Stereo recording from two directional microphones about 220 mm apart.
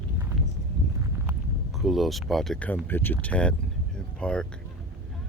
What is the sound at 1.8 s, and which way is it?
Speech, centre (ahead or behind).